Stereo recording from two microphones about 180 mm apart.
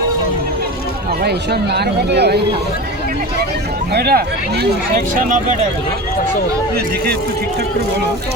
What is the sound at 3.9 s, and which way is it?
Speech, 60° right (ahead or behind).